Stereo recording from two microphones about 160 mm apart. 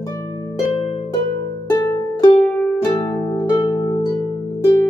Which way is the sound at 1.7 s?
25° left (ahead or behind).